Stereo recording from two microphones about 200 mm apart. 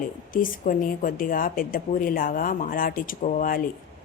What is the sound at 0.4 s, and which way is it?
Speech, 45° left (ahead or behind).